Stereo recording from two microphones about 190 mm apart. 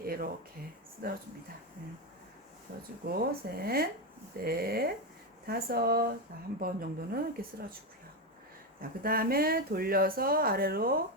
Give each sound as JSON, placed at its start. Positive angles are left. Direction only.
{"t": 0.0, "sound": "speech", "side_deg": -50}
{"t": 3.1, "sound": "speech", "side_deg": -55}
{"t": 8.8, "sound": "speech", "side_deg": -50}